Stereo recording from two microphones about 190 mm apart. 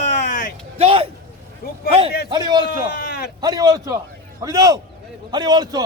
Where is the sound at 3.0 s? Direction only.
60° left (ahead or behind).